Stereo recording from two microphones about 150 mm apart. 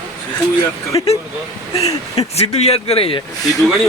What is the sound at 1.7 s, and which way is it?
Speech, 45° left (ahead or behind).